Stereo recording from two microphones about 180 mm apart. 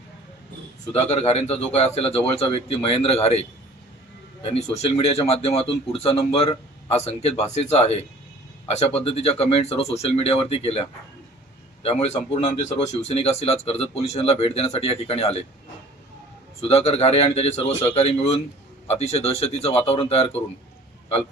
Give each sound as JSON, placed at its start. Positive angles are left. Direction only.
{"t": 1.1, "sound": "speech", "side_deg": 35}
{"t": 4.8, "sound": "speech", "side_deg": 35}
{"t": 16.6, "sound": "speech", "side_deg": 35}